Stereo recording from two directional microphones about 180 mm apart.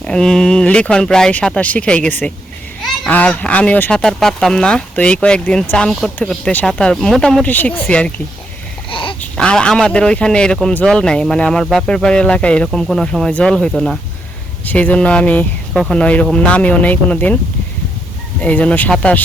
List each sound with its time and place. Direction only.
0.0 s a man's voice: 5° left (ahead or behind)
8.9 s a sound: 30° left (ahead or behind)
9.2 s a man's voice: 5° left (ahead or behind)
18.4 s speech: 10° left (ahead or behind)